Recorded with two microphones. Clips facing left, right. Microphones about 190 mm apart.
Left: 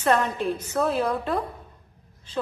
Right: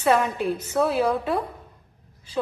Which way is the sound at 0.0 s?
5° right (ahead or behind).